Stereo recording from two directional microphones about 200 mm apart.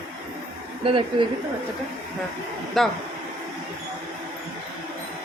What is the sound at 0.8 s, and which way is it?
Speech, 25° right (ahead or behind).